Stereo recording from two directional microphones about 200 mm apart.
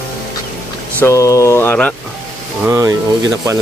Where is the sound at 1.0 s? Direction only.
15° left (ahead or behind).